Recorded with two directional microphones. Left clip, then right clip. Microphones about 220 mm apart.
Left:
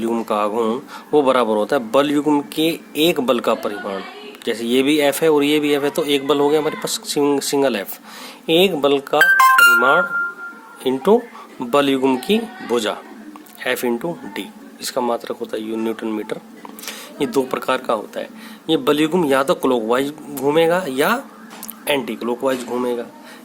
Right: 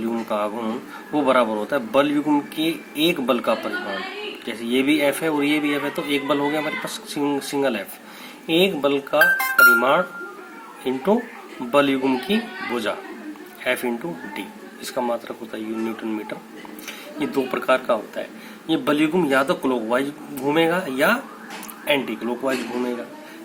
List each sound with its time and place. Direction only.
0.1 s speech: 50° left (ahead or behind)